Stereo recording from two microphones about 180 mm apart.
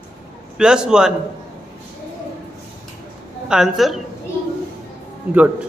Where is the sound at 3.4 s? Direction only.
5° right (ahead or behind).